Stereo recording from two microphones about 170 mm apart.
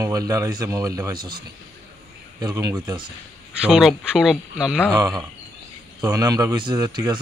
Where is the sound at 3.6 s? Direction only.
5° right (ahead or behind).